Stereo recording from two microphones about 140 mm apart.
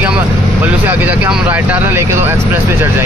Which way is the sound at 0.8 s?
10° right (ahead or behind).